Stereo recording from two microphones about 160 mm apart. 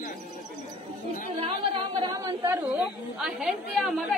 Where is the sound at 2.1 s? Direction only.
25° right (ahead or behind).